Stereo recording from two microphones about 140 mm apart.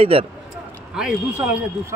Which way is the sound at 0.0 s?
45° right (ahead or behind).